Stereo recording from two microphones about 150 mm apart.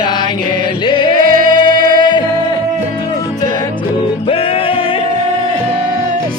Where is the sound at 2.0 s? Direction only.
30° left (ahead or behind).